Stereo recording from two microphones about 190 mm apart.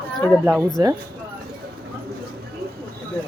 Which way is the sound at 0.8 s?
20° right (ahead or behind).